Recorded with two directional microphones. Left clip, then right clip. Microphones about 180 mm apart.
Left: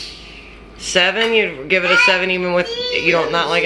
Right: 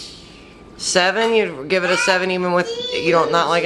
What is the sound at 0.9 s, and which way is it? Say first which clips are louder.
Speech: left 1 dB; 10° right (ahead or behind).